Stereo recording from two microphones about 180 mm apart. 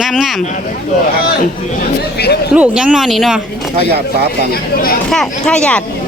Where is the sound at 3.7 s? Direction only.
60° right (ahead or behind).